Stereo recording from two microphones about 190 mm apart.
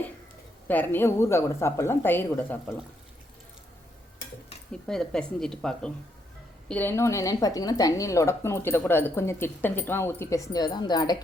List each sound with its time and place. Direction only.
0.7 s a woman's voice: 10° left (ahead or behind)
4.7 s a woman's voice: 5° left (ahead or behind); by 11.2 s 20° left (ahead or behind)